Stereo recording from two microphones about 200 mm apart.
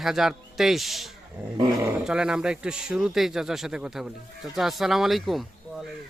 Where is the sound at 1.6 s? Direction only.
15° right (ahead or behind).